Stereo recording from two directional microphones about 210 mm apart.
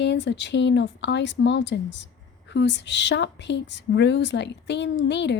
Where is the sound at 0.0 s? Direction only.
55° left (ahead or behind).